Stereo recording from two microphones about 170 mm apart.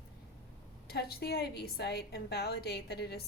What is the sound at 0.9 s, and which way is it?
A woman's voice, 70° left (ahead or behind).